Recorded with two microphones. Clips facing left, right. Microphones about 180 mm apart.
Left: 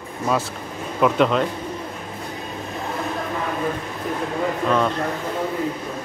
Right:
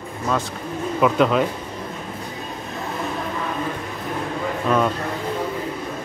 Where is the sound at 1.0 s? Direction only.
Centre (ahead or behind).